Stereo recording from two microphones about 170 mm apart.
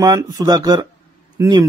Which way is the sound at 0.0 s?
20° right (ahead or behind).